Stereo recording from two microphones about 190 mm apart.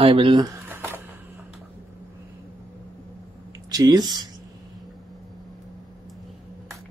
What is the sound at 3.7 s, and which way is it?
Speech, 20° right (ahead or behind).